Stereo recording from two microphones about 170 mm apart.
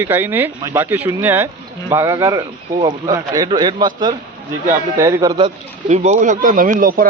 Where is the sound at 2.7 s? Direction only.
35° right (ahead or behind).